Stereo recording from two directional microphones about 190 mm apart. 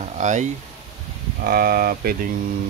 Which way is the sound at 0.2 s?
40° right (ahead or behind).